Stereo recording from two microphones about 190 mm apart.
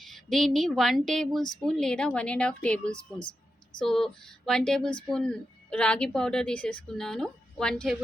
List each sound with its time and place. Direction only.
0.0 s a woman's voice: centre (ahead or behind)
3.2 s a sound: 25° left (ahead or behind)
3.8 s a woman's voice: centre (ahead or behind)